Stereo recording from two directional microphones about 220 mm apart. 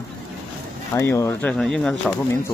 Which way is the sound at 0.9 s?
10° left (ahead or behind).